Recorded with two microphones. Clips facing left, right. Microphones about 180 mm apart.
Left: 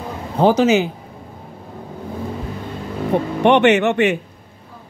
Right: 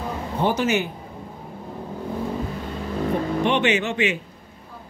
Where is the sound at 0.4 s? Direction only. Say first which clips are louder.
Left 8 dB; 90° left.